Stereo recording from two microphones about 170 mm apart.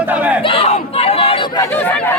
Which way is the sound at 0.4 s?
35° left (ahead or behind).